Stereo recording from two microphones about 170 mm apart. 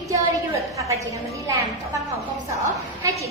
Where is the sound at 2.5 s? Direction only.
20° right (ahead or behind).